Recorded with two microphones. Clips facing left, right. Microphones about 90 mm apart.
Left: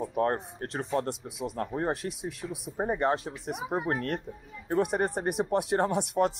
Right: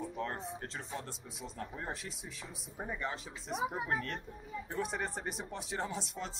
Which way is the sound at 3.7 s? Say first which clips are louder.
Left 7 dB; 45° left (ahead or behind).